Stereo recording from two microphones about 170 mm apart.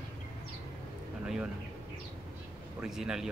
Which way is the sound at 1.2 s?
5° right (ahead or behind).